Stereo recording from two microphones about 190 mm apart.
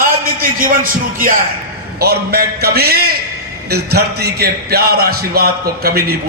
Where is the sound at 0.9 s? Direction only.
50° right (ahead or behind).